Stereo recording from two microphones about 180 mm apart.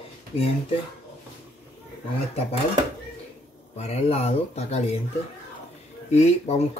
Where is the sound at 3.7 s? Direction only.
35° left (ahead or behind).